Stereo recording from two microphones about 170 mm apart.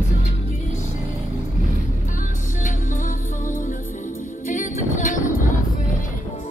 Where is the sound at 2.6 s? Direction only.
45° left (ahead or behind).